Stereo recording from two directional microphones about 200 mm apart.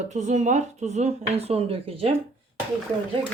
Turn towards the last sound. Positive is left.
turn(degrees=-25)  # may be behind; listen again after turning